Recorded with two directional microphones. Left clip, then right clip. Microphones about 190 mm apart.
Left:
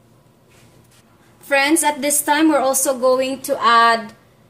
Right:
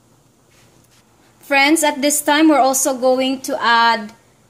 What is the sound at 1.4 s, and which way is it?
A woman's voice, 35° right (ahead or behind).